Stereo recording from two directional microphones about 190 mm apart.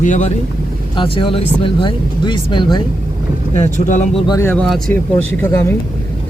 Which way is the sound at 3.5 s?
40° left (ahead or behind).